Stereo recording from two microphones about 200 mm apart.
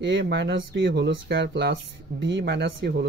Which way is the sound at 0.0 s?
60° right (ahead or behind).